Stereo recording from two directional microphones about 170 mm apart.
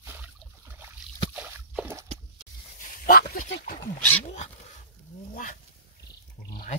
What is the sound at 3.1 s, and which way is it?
Dog, 55° left (ahead or behind).